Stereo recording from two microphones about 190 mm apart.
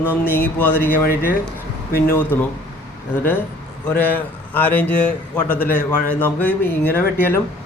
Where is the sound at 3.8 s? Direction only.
10° left (ahead or behind).